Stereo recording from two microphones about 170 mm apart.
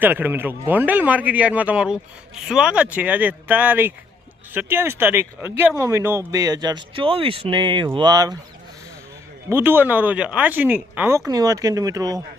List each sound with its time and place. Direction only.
0.0 s speech: 10° right (ahead or behind)
9.5 s speech: 10° right (ahead or behind)